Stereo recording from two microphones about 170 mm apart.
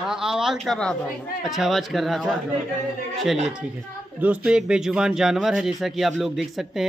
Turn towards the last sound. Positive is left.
turn(degrees=0)  # may be behind; listen again after turning